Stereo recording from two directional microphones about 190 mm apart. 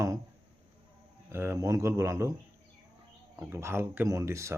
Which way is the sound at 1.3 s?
15° right (ahead or behind).